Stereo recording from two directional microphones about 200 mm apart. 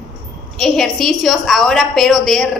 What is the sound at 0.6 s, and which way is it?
A woman's voice, centre (ahead or behind).